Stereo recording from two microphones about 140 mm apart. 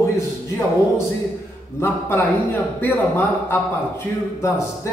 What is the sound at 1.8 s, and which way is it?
A man's voice, 15° left (ahead or behind).